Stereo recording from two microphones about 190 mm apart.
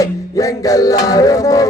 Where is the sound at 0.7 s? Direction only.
20° left (ahead or behind).